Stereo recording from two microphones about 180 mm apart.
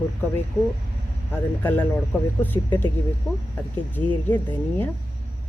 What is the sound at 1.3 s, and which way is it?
A woman's voice, 10° left (ahead or behind).